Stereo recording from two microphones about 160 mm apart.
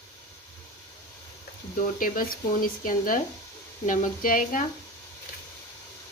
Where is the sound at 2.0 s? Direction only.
60° left (ahead or behind).